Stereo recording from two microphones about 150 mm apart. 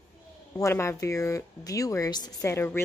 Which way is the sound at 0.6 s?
20° left (ahead or behind).